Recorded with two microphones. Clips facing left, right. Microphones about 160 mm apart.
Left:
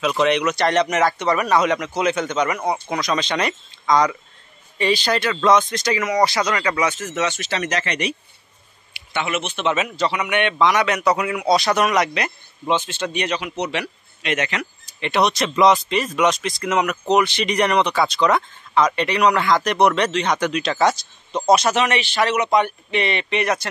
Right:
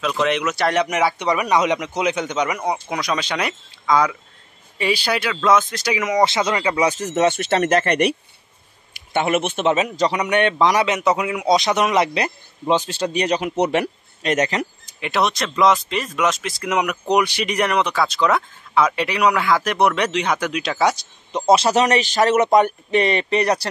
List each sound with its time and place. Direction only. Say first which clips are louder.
0.0 s speech: left 2 dB; centre (ahead or behind)
6.2 s a man's voice: right 1 dB; 25° right (ahead or behind)
6.9 s speech: right 5 dB; 40° right (ahead or behind); by 8.2 s 60° right (ahead or behind)
8.9 s speech: right 5 dB; 50° right (ahead or behind)
9.7 s speech: right 2 dB; 35° right (ahead or behind)
10.9 s a man's voice: even; 20° right (ahead or behind); by 13.5 s 40° right (ahead or behind)
13.6 s speech: right 6 dB; 50° right (ahead or behind)
15.0 s speech: left 2 dB; 5° right (ahead or behind); by 23.7 s 35° right (ahead or behind)